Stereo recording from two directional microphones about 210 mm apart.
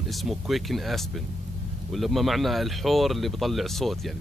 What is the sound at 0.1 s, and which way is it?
Speech, centre (ahead or behind).